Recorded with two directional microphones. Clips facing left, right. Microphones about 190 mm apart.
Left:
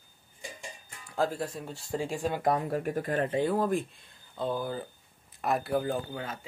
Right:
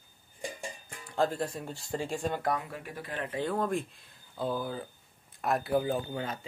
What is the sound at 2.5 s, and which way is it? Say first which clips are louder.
Speech: left 8 dB; 40° left (ahead or behind).